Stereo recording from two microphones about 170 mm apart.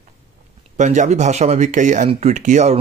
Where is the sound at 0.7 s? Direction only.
45° right (ahead or behind).